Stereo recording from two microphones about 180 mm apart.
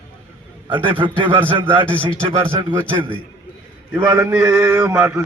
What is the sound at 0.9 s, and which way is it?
A man's voice, 30° right (ahead or behind).